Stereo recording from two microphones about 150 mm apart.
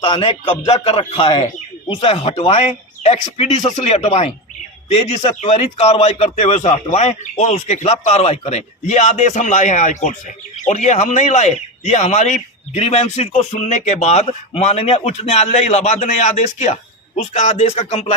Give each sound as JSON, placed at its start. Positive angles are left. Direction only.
{"t": 0.0, "sound": "speech", "side_deg": 35}